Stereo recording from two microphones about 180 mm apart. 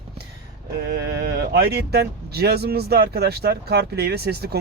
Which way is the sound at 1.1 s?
65° right (ahead or behind).